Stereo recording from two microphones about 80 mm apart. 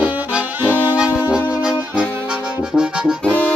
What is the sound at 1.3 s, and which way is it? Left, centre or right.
Accordion, centre.